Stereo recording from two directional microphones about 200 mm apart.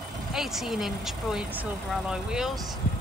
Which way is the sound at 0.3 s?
Centre (ahead or behind).